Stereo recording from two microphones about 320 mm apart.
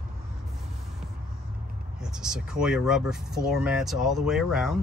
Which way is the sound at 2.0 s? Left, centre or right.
Centre.